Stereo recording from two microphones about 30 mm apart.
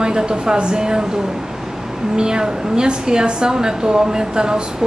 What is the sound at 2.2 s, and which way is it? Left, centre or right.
A woman's voice, right.